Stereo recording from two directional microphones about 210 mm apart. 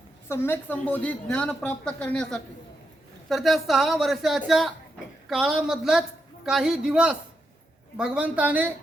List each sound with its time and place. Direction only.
0.3 s a woman's voice: 10° left (ahead or behind); by 8.7 s 5° right (ahead or behind)